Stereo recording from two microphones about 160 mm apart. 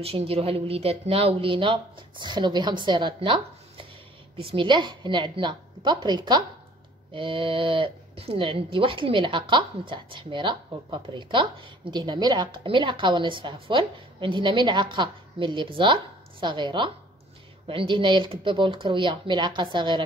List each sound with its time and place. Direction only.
0.0 s a woman's voice: 40° right (ahead or behind)